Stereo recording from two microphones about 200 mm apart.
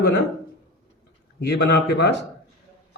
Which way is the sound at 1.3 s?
55° left (ahead or behind).